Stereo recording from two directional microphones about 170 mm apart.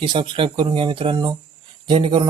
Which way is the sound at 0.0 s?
30° right (ahead or behind).